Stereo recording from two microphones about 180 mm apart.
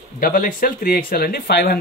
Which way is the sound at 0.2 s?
50° left (ahead or behind).